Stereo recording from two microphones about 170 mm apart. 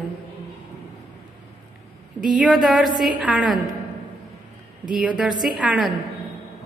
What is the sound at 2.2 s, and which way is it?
A woman's voice, 5° right (ahead or behind).